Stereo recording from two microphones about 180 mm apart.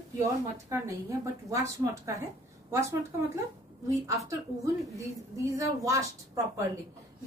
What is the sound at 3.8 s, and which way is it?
A woman's voice, 15° right (ahead or behind).